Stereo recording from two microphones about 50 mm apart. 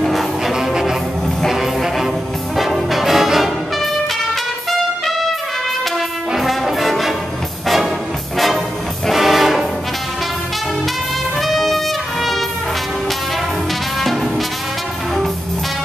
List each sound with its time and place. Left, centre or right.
0.0 s music: centre
0.6 s music: centre
2.5 s brass instrument: centre
4.6 s trumpet: centre
5.9 s brass instrument: centre
7.6 s music: centre
9.1 s music: centre
11.4 s trumpet: centre